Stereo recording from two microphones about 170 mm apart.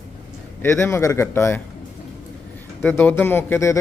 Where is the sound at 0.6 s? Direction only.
15° left (ahead or behind).